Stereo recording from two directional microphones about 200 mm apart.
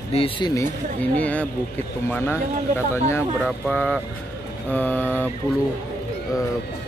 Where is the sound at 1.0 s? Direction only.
5° left (ahead or behind).